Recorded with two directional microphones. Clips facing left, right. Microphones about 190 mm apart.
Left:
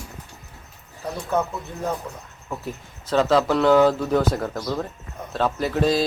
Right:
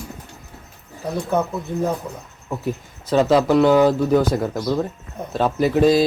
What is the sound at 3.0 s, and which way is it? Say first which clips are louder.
Speech: right 3 dB; 10° right (ahead or behind).